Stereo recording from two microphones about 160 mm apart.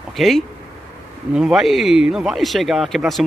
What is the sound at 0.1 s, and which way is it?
Speech, centre (ahead or behind).